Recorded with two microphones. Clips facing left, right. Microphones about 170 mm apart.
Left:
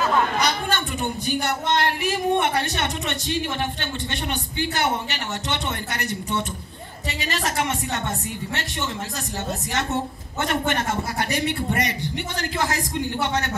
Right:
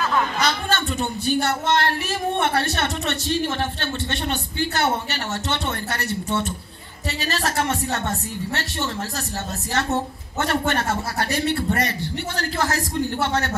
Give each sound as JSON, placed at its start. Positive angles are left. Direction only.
{"t": 0.4, "sound": "speech", "side_deg": 15}
{"t": 10.4, "sound": "speech", "side_deg": 20}